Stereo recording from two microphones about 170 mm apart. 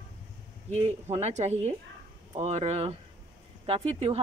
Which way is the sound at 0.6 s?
35° right (ahead or behind).